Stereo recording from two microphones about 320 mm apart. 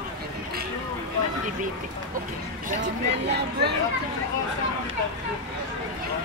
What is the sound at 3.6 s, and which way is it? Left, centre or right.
Speech, right.